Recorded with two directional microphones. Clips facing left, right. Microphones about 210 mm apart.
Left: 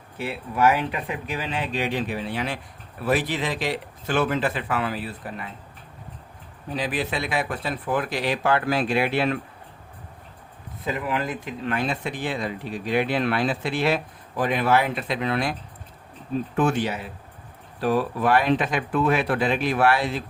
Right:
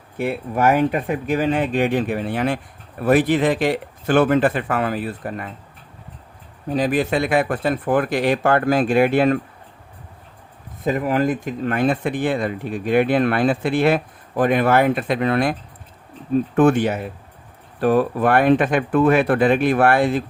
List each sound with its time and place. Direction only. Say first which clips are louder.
0.2 s speech: right 3 dB; 50° right (ahead or behind)
6.7 s speech: right 8 dB; 45° right (ahead or behind)
10.8 s speech: right 8 dB; 45° right (ahead or behind)
16.6 s speech: right 7 dB; 55° right (ahead or behind)